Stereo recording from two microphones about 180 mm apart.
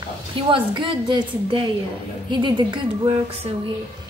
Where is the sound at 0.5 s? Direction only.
25° right (ahead or behind).